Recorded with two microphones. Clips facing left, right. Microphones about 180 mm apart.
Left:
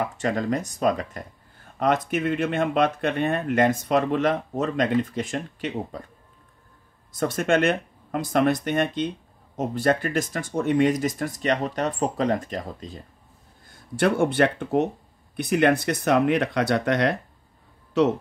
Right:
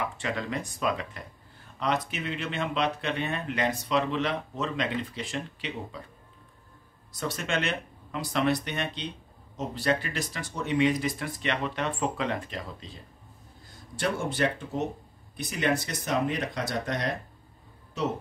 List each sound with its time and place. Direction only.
0.0 s speech: 45° left (ahead or behind)
7.1 s speech: 50° left (ahead or behind)
13.9 s speech: 60° left (ahead or behind)